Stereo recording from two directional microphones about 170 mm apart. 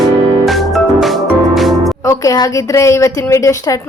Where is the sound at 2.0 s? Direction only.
20° left (ahead or behind).